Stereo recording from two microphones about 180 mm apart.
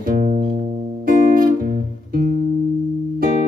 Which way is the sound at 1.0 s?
50° right (ahead or behind).